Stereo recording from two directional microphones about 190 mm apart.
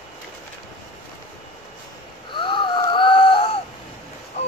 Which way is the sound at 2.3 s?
25° left (ahead or behind).